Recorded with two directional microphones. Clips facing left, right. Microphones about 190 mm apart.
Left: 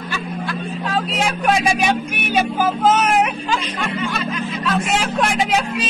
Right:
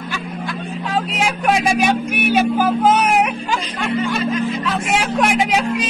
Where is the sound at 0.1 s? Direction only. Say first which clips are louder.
Left 2 dB; 15° right (ahead or behind).